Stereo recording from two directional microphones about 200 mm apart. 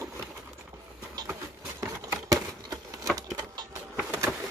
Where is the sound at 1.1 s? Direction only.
15° right (ahead or behind).